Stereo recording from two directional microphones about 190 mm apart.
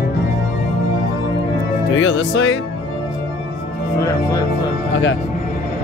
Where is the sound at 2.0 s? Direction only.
85° left.